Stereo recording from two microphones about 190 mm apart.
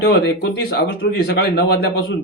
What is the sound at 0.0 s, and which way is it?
Speech, 60° left (ahead or behind).